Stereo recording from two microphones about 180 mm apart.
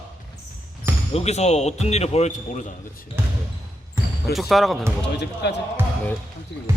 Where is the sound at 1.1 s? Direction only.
35° left (ahead or behind).